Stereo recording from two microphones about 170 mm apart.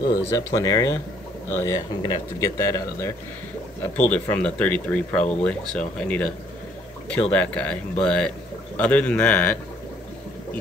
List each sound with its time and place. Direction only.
0.0 s speech: 65° left (ahead or behind)
0.6 s speech: 20° left (ahead or behind)